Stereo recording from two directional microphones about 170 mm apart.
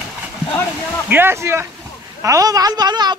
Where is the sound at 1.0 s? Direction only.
10° right (ahead or behind).